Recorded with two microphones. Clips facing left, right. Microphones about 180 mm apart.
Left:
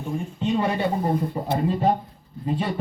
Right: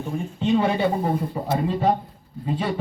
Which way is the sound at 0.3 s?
5° right (ahead or behind).